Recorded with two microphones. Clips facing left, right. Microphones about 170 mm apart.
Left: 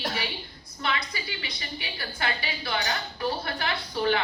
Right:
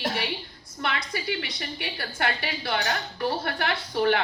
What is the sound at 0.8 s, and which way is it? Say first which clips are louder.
A woman's voice: right 2 dB; 65° right (ahead or behind).